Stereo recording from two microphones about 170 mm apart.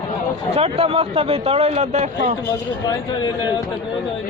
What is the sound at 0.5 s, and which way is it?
Speech, 35° right (ahead or behind).